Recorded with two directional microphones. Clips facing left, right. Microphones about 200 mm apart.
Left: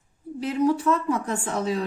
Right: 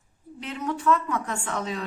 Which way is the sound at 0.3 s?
35° left (ahead or behind).